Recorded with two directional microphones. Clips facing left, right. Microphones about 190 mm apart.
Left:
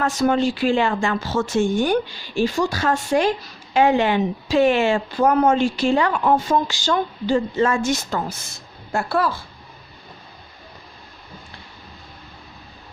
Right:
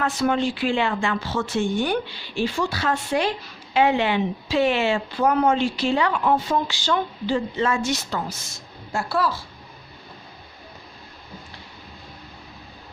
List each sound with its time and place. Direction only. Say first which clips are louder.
0.0 s speech: left 3 dB; 40° left (ahead or behind)